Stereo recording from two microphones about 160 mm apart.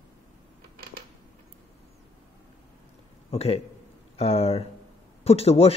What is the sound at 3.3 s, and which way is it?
A man's voice, 40° left (ahead or behind).